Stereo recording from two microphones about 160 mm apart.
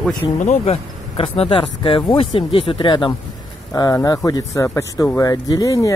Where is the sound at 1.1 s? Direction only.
35° left (ahead or behind).